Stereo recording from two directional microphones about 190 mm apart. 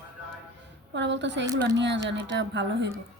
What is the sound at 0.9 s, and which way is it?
A woman's voice, 70° right (ahead or behind).